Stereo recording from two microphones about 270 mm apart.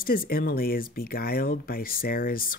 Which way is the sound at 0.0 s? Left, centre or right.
Left.